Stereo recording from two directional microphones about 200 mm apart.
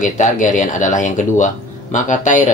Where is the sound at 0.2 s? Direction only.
40° left (ahead or behind).